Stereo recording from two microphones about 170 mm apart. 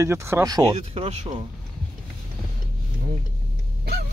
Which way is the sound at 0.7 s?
40° right (ahead or behind).